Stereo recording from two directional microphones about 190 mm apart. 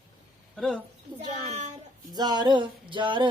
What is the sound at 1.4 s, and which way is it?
Speech, 35° right (ahead or behind).